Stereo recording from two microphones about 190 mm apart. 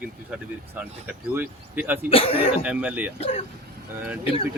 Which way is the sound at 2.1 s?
30° left (ahead or behind).